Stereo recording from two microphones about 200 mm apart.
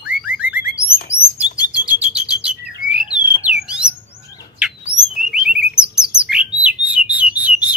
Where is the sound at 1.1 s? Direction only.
15° left (ahead or behind).